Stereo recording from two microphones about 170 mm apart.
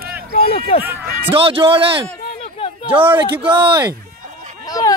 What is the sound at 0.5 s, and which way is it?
Speech, 35° left (ahead or behind).